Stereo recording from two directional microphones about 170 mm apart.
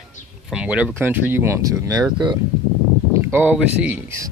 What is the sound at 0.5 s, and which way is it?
Speech, 5° right (ahead or behind).